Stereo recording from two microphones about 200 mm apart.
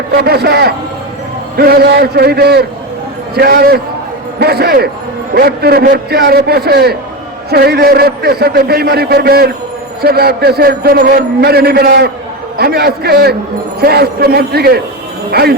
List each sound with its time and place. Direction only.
0.1 s a man's voice: 50° right (ahead or behind)